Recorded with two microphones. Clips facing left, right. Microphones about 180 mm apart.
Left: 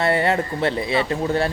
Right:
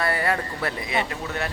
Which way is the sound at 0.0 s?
25° left (ahead or behind).